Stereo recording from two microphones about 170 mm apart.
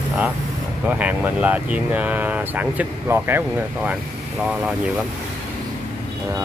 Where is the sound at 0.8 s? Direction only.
10° right (ahead or behind).